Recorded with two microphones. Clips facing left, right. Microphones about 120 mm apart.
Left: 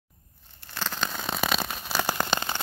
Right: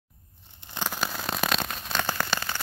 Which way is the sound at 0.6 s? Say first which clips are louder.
Right 1 dB; 15° right (ahead or behind).